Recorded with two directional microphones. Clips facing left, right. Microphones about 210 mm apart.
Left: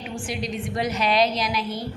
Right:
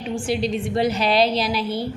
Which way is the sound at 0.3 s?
30° right (ahead or behind).